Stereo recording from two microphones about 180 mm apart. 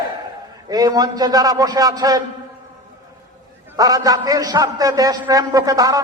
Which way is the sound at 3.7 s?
20° right (ahead or behind).